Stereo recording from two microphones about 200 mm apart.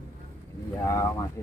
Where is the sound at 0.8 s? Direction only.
15° left (ahead or behind).